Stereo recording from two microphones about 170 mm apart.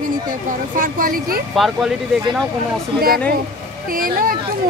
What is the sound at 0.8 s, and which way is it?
Speech, 55° right (ahead or behind).